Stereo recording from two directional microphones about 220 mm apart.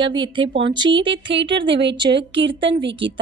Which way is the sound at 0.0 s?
20° right (ahead or behind).